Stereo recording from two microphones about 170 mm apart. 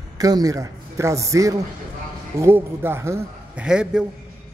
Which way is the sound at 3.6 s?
5° right (ahead or behind).